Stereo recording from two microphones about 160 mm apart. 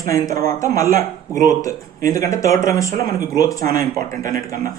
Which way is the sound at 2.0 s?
20° left (ahead or behind).